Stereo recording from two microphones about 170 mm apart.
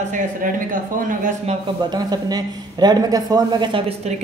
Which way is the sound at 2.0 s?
25° right (ahead or behind).